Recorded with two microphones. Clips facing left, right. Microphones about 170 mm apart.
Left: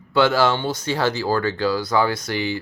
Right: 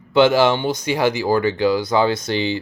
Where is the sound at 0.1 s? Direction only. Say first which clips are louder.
Right 4 dB; 20° right (ahead or behind).